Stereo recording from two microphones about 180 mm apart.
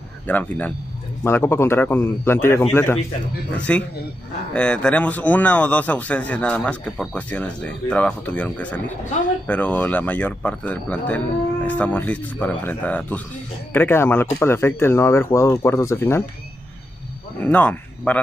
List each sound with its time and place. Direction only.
0.3 s a man's voice: 10° left (ahead or behind)
17.4 s speech: 10° left (ahead or behind)